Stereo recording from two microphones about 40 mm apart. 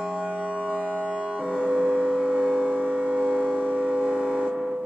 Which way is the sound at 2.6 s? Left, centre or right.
Right.